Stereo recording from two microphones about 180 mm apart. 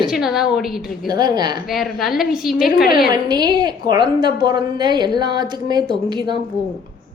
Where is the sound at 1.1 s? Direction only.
25° right (ahead or behind).